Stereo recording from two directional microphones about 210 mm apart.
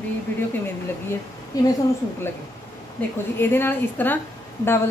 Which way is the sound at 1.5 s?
15° left (ahead or behind).